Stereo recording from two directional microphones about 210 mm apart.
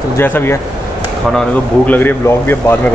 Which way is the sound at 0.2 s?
10° left (ahead or behind).